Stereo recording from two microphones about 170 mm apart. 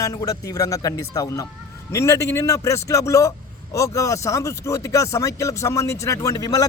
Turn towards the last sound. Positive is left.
turn(degrees=20)  # may be behind; listen again after turning